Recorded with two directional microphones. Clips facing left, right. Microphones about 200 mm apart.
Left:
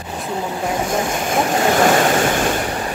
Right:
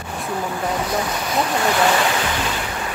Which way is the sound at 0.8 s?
50° left (ahead or behind).